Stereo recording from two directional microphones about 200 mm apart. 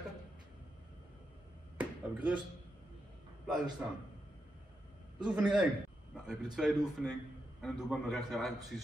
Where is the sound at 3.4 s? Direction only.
Centre (ahead or behind).